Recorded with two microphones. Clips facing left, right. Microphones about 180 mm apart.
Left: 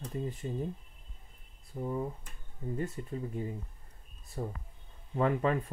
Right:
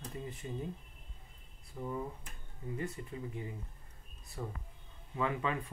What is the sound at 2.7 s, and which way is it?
Speech, 45° left (ahead or behind).